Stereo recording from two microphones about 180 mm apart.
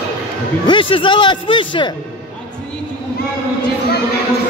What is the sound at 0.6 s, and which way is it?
Speech, 30° left (ahead or behind).